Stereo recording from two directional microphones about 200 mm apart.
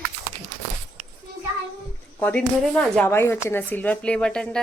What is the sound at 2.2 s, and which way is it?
A woman's voice, 5° left (ahead or behind).